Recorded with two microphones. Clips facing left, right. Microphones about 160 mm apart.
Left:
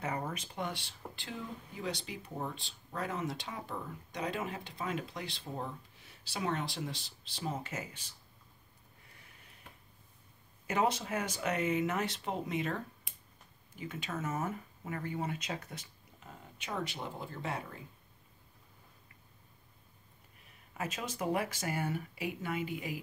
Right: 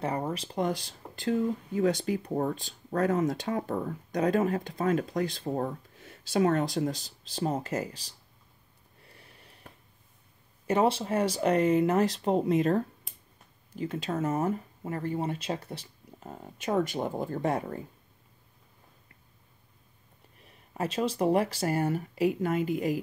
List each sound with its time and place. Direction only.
0.0 s speech: 35° right (ahead or behind)
10.7 s speech: 30° right (ahead or behind)
16.3 s speech: 45° right (ahead or behind)
20.7 s speech: 35° right (ahead or behind)